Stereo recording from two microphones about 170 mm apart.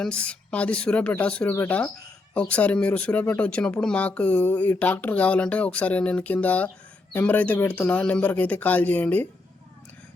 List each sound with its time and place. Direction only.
0.0 s speech: 5° left (ahead or behind)